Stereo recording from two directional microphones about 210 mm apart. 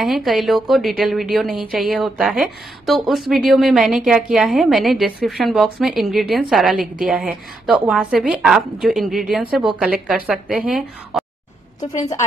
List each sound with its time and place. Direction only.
0.0 s speech: centre (ahead or behind)
11.8 s a woman's voice: 15° left (ahead or behind)